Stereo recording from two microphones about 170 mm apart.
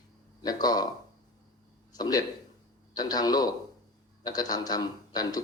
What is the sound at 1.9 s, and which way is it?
A man's voice, 20° left (ahead or behind).